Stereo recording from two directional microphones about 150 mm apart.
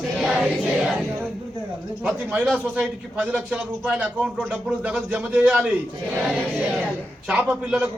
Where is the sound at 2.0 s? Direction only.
10° right (ahead or behind).